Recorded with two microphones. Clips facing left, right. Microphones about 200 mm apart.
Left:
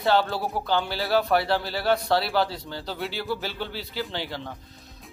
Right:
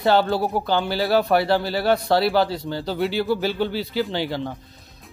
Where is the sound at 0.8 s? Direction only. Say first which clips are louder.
Right 4 dB; 5° right (ahead or behind).